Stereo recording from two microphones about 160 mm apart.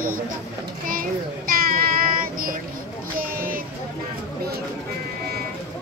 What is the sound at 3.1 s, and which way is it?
Vehicle, 60° right (ahead or behind).